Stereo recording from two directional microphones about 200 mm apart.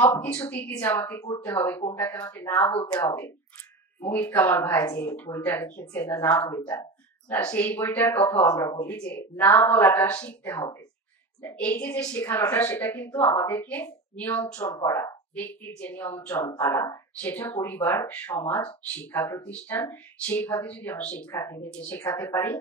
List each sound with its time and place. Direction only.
0.0 s a woman's voice: 10° left (ahead or behind)